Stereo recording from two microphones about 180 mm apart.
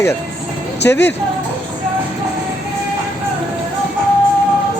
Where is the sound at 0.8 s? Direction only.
75° left (ahead or behind).